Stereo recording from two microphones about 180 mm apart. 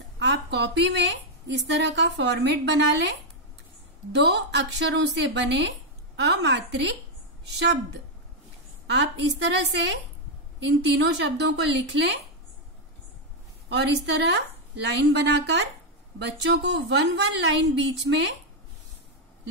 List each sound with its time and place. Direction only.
0.2 s a woman's voice: 75° right (ahead or behind)
4.1 s a woman's voice: 75° right (ahead or behind)
13.7 s a woman's voice: 75° right (ahead or behind)
18.1 s speech: 90° right